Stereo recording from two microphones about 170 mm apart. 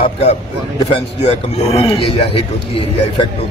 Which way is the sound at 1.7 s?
35° left (ahead or behind).